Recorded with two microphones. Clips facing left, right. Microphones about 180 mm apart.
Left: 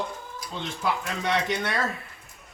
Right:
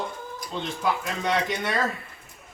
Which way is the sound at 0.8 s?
Centre (ahead or behind).